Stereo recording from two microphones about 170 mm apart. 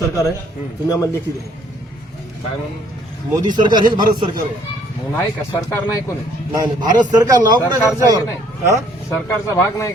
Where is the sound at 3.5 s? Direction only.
25° right (ahead or behind).